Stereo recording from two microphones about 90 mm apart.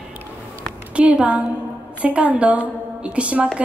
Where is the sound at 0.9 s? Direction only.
15° right (ahead or behind).